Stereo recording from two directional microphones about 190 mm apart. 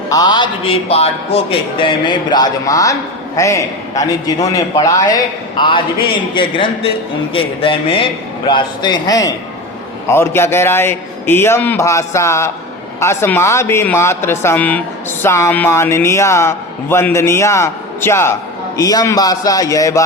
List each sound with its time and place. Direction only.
0.1 s a man's voice: 20° left (ahead or behind)